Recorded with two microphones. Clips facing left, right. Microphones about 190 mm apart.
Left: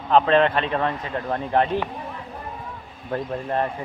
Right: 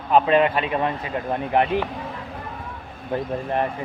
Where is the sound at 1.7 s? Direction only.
90° right.